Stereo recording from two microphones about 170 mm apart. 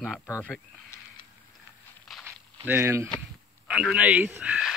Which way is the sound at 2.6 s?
15° right (ahead or behind).